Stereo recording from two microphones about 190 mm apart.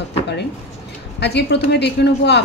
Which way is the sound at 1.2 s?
60° left (ahead or behind).